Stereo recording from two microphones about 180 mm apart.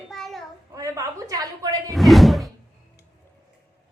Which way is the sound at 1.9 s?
Centre (ahead or behind).